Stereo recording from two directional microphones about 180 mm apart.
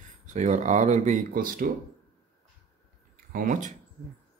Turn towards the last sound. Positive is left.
turn(degrees=-45)  # may be behind; listen again after turning